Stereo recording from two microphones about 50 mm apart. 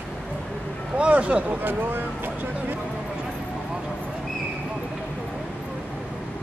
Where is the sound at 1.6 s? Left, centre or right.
Right.